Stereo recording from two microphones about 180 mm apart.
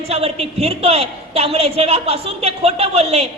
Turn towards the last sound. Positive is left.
turn(degrees=-35)  # may be behind; listen again after turning